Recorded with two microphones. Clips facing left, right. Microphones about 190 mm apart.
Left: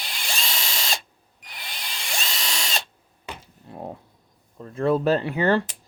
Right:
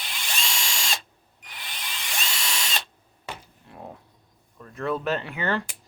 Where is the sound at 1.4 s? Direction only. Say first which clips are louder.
Left 1 dB; 40° left (ahead or behind).